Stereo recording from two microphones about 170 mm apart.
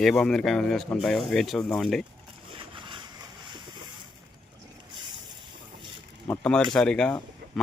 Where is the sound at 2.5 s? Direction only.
30° right (ahead or behind).